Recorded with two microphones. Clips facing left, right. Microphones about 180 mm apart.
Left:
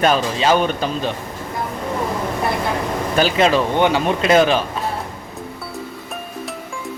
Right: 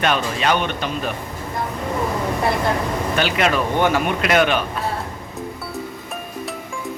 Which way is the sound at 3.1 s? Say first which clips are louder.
Left 5 dB; 35° left (ahead or behind).